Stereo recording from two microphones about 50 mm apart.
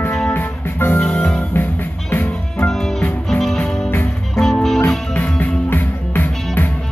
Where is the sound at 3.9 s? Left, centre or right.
Left.